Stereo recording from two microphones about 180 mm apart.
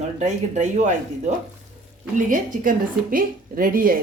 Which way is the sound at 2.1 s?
50° right (ahead or behind).